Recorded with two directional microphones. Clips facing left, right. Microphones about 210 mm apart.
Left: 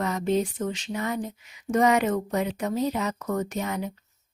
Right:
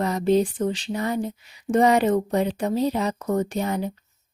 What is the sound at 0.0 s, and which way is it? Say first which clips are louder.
Speech: right 5 dB; 35° right (ahead or behind).